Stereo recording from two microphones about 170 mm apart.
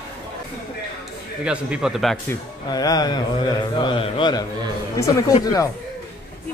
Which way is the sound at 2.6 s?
20° left (ahead or behind).